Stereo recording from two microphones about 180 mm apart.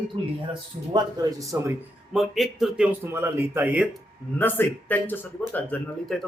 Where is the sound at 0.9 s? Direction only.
20° right (ahead or behind).